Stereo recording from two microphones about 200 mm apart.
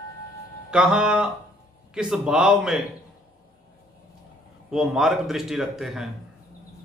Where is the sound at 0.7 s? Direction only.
5° right (ahead or behind).